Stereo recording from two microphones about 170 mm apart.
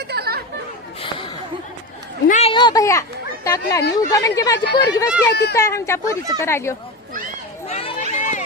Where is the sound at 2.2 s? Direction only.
45° left (ahead or behind).